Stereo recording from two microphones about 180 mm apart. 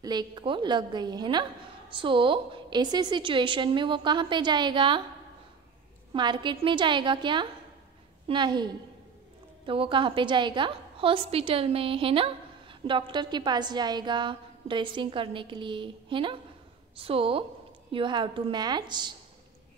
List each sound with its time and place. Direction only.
0.0 s a woman's voice: 25° right (ahead or behind)
6.1 s a woman's voice: 25° right (ahead or behind)
9.7 s a woman's voice: 30° right (ahead or behind)